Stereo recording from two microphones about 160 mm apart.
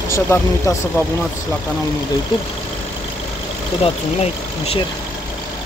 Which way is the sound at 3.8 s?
35° left (ahead or behind).